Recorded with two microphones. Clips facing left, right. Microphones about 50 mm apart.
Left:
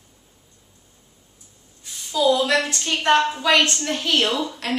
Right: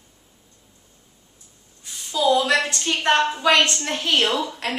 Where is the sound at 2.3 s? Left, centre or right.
Centre.